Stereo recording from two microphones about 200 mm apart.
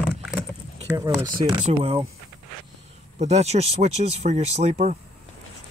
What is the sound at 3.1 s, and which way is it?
Speech, 35° right (ahead or behind).